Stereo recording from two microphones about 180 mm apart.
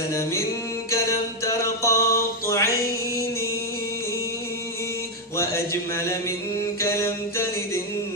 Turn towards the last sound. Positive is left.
turn(degrees=15)  # may be behind; listen again after turning